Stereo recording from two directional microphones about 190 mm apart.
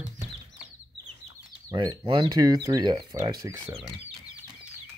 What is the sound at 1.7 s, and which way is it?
Speech, 25° right (ahead or behind).